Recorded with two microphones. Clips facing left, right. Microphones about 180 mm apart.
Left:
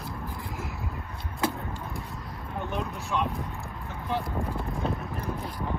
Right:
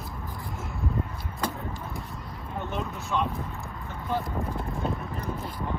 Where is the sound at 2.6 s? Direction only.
Centre (ahead or behind).